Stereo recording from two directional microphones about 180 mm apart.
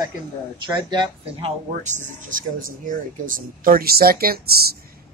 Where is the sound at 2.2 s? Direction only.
45° right (ahead or behind).